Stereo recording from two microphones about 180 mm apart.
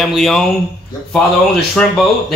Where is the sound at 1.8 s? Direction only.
5° left (ahead or behind).